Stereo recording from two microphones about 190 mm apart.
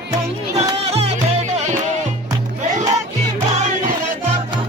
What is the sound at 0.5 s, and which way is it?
Music, 35° right (ahead or behind).